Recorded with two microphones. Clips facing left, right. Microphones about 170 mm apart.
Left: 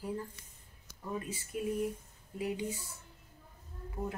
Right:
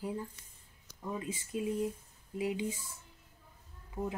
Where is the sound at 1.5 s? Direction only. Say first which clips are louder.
Right 1 dB; 20° right (ahead or behind).